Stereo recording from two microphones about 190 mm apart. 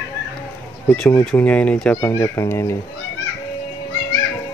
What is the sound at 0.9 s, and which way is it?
Speech, 10° left (ahead or behind).